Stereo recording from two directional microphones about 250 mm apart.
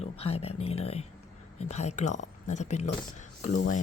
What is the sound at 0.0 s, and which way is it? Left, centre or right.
Speech, left.